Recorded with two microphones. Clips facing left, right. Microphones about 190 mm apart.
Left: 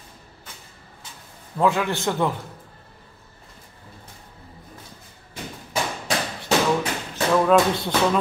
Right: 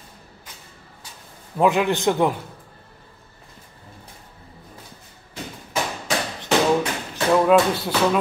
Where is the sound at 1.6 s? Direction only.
15° right (ahead or behind).